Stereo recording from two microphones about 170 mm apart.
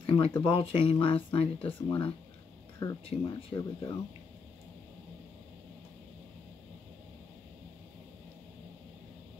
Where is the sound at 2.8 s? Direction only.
20° left (ahead or behind).